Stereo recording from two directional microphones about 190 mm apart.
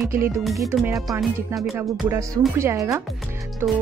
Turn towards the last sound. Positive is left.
turn(degrees=-10)  # may be behind; listen again after turning